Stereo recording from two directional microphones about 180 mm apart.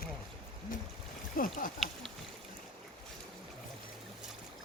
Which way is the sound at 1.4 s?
50° left (ahead or behind).